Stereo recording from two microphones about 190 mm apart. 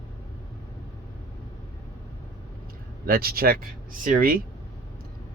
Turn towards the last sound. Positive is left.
turn(degrees=-50)  # may be behind; listen again after turning